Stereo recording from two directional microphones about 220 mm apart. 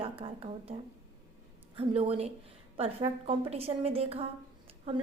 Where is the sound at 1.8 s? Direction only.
25° right (ahead or behind).